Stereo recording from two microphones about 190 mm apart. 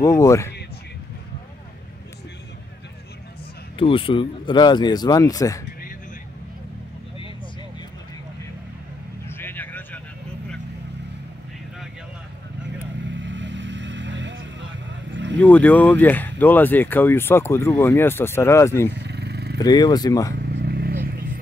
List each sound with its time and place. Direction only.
0.0 s speech: 15° left (ahead or behind)
3.7 s speech: 30° left (ahead or behind)
9.3 s vehicle: 10° left (ahead or behind)
13.1 s vehicle: 70° right (ahead or behind)
15.4 s speech: 10° left (ahead or behind)
18.9 s vehicle: 60° right (ahead or behind)
19.6 s speech: 20° left (ahead or behind)
20.5 s vehicle: 55° right (ahead or behind)